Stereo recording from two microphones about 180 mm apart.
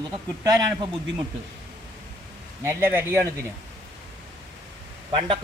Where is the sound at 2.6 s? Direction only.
15° right (ahead or behind).